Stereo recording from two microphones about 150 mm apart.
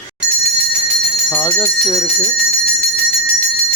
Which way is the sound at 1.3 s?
10° left (ahead or behind).